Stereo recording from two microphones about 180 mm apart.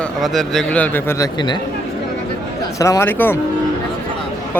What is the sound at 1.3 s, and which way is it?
Speech, 25° left (ahead or behind).